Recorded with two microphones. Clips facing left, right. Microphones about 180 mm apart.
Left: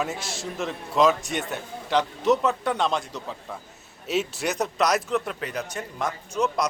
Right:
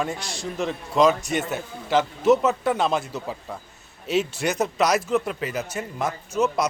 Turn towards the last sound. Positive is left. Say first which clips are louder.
# right 2 dB
turn(degrees=-5)  # may be behind; listen again after turning